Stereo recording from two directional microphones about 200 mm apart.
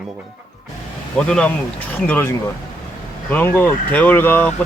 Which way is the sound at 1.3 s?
5° left (ahead or behind).